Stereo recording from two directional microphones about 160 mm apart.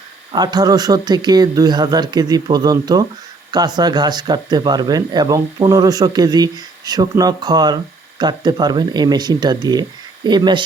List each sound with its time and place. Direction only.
0.3 s speech: 25° right (ahead or behind)